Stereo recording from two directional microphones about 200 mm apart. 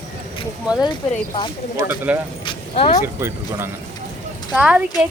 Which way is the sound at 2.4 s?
25° left (ahead or behind).